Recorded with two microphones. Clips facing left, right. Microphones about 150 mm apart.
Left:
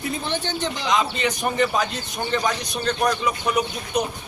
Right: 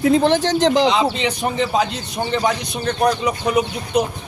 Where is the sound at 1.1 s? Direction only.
25° right (ahead or behind).